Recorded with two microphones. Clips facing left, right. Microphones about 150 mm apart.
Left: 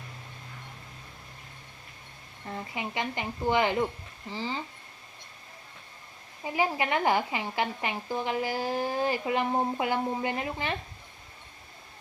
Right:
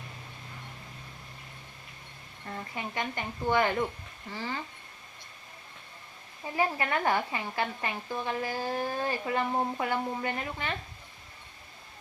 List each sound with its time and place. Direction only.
2.6 s a woman's voice: 15° left (ahead or behind)
6.4 s a woman's voice: 20° left (ahead or behind)
8.7 s a woman's voice: 25° left (ahead or behind)